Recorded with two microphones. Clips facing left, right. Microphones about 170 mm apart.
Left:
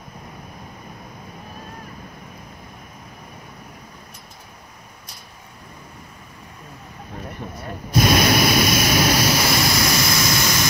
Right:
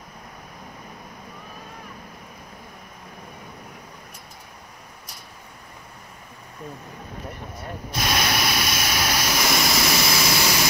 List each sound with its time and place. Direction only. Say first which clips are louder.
8.0 s vehicle: left 8 dB; 45° left (ahead or behind)
9.3 s vehicle: left 3 dB; centre (ahead or behind)